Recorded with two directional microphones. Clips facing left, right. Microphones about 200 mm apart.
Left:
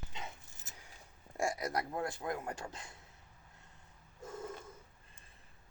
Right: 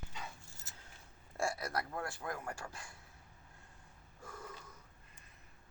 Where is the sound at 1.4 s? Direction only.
15° left (ahead or behind).